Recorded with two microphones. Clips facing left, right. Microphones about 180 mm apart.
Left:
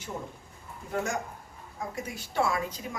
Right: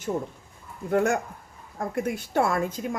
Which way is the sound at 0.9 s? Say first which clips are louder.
Right 8 dB; 55° right (ahead or behind).